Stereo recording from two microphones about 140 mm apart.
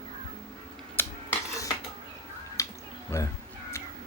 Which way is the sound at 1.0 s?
20° left (ahead or behind).